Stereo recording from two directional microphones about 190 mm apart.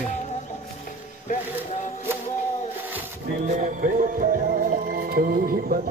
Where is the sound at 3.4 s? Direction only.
40° right (ahead or behind).